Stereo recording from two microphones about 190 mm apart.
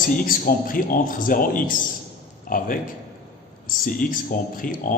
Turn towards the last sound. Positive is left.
turn(degrees=45)  # may be behind; listen again after turning